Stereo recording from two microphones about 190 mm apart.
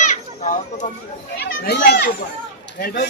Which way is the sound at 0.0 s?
40° left (ahead or behind).